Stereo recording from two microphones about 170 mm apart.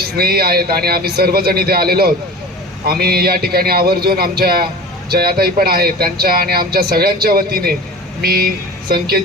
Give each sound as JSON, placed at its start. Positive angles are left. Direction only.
{"t": 0.2, "sound": "a man's voice", "side_deg": -65}